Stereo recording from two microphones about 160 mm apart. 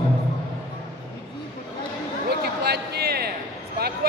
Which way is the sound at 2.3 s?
85° right.